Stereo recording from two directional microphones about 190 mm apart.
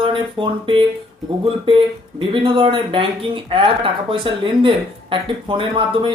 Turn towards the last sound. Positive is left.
turn(degrees=-25)  # may be behind; listen again after turning